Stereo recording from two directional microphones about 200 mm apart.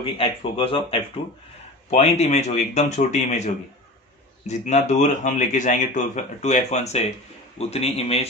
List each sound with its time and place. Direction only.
0.0 s speech: 25° left (ahead or behind)
4.5 s speech: 35° left (ahead or behind)